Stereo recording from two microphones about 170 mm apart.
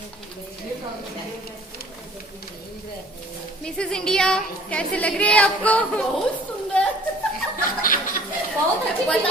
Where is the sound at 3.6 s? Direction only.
5° left (ahead or behind).